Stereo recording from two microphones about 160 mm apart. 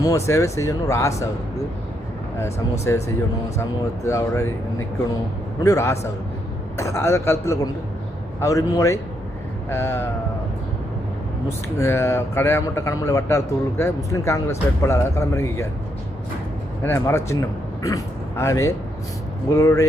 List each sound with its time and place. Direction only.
0.3 s speech: 20° left (ahead or behind)
2.8 s speech: 15° left (ahead or behind)
5.6 s speech: 20° left (ahead or behind)
11.4 s speech: 15° left (ahead or behind)
16.8 s speech: 15° left (ahead or behind)